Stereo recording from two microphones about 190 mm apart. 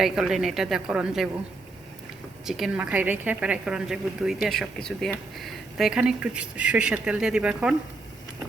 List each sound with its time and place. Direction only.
0.0 s a woman's voice: centre (ahead or behind)
2.5 s a woman's voice: 5° right (ahead or behind)